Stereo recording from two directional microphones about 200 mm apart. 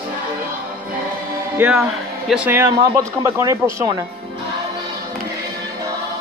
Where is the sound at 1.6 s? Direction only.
5° right (ahead or behind).